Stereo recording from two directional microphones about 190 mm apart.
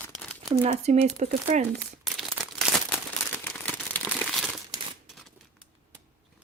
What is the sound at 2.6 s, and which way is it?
Crumpling, 5° right (ahead or behind).